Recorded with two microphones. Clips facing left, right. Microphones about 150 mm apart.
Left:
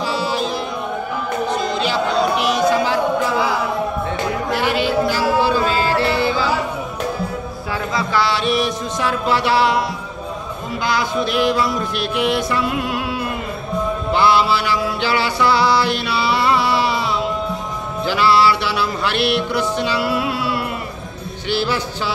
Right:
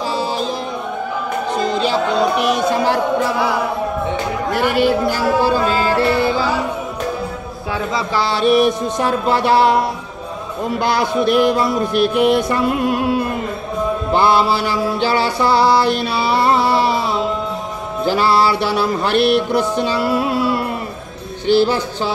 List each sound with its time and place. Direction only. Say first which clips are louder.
0.1 s music: even; 40° right (ahead or behind)
1.8 s speech: right 2 dB; 40° right (ahead or behind)
4.7 s music: right 3 dB; 50° right (ahead or behind)
8.1 s mantra: right 4 dB; 40° right (ahead or behind)
9.0 s music: right 2 dB; 45° right (ahead or behind)
10.8 s music: right 2 dB; 55° right (ahead or behind)
14.1 s mantra: right 1 dB; 45° right (ahead or behind)
18.0 s music: right 1 dB; 40° right (ahead or behind)